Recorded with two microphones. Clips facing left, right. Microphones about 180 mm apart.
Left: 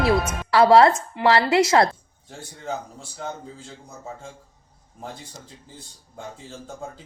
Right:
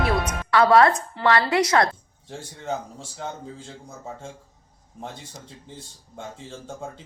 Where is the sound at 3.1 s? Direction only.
Centre (ahead or behind).